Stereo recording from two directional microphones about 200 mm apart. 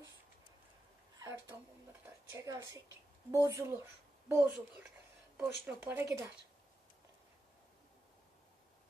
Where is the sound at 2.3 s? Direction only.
15° right (ahead or behind).